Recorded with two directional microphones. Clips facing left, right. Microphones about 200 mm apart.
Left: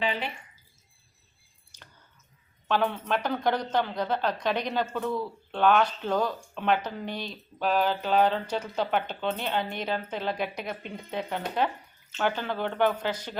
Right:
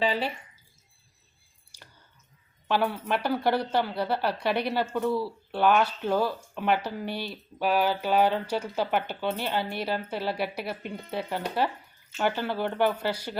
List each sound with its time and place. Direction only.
0.0 s speech: 35° right (ahead or behind)
1.7 s squish: 10° right (ahead or behind)
2.6 s a woman's voice: 10° right (ahead or behind)